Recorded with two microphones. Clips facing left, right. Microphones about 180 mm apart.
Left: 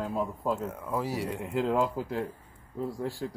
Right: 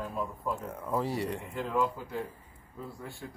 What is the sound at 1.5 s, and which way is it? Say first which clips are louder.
Speech: left 5 dB; 90° left.